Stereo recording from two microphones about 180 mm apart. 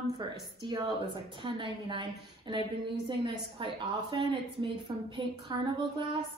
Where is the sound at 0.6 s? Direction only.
20° right (ahead or behind).